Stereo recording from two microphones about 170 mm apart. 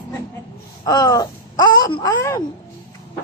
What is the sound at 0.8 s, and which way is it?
A woman's voice, 25° left (ahead or behind).